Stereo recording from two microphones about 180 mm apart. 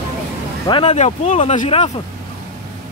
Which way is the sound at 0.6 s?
30° left (ahead or behind).